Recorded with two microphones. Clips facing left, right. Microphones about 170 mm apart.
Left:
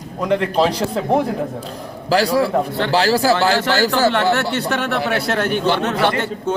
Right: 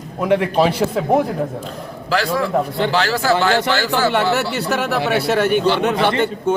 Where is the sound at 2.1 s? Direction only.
35° left (ahead or behind).